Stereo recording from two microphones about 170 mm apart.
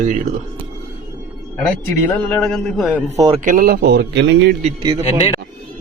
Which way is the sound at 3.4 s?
50° right (ahead or behind).